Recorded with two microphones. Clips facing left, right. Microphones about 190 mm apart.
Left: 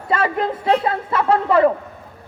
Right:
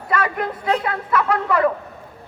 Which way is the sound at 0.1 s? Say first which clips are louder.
Left 3 dB; 25° left (ahead or behind).